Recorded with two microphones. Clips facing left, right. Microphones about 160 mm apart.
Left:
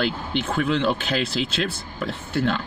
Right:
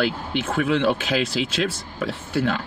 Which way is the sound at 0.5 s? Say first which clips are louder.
Right 2 dB; 55° right (ahead or behind).